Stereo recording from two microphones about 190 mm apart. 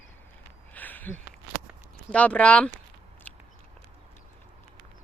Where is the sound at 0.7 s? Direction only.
10° left (ahead or behind).